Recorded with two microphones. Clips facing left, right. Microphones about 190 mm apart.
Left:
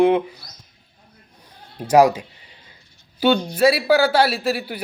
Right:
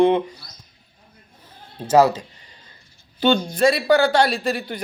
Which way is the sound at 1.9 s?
15° left (ahead or behind).